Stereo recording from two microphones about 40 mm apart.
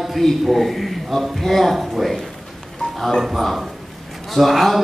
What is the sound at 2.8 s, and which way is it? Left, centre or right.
Music, left.